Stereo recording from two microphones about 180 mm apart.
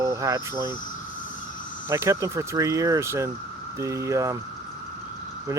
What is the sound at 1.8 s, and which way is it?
Speech, 15° right (ahead or behind).